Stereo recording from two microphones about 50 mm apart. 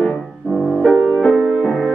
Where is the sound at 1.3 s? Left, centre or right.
Centre.